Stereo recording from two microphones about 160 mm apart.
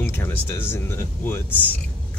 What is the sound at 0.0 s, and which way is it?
Speech, 15° left (ahead or behind).